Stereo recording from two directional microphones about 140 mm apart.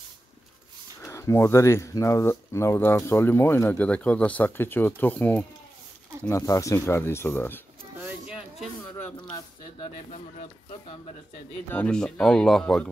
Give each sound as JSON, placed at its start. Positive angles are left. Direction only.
{"t": 1.0, "sound": "speech", "side_deg": 20}
{"t": 8.0, "sound": "a sound", "side_deg": -5}
{"t": 9.3, "sound": "speech", "side_deg": 45}
{"t": 11.7, "sound": "speech", "side_deg": 10}